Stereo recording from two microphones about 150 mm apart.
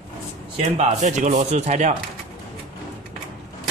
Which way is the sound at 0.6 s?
45° right (ahead or behind).